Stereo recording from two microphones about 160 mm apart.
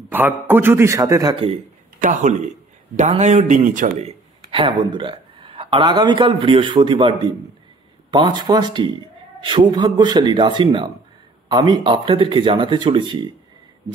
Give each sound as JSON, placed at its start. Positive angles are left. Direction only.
{"t": 0.1, "sound": "a man's voice", "side_deg": -10}
{"t": 2.0, "sound": "a man's voice", "side_deg": -50}
{"t": 4.5, "sound": "a man's voice", "side_deg": -35}